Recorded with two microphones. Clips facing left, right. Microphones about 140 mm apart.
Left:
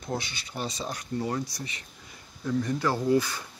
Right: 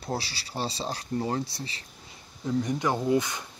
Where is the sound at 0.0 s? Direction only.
35° right (ahead or behind).